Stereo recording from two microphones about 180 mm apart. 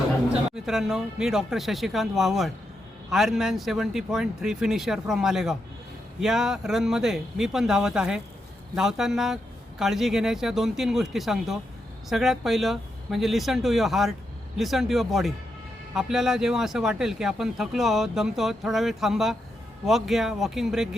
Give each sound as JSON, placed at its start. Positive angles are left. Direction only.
{"t": 0.5, "sound": "speech", "side_deg": -5}